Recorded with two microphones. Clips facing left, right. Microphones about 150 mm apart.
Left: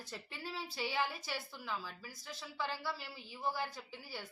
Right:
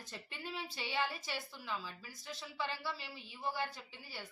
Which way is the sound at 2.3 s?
10° left (ahead or behind).